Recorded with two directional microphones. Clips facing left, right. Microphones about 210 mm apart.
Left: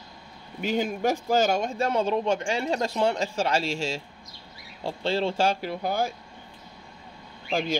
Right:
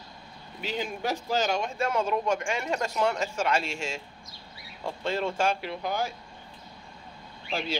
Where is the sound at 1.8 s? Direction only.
30° left (ahead or behind).